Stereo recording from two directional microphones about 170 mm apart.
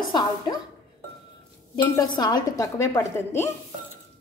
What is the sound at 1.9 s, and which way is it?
Speech, 25° left (ahead or behind).